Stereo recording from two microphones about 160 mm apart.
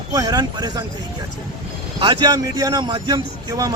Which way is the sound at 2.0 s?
25° right (ahead or behind).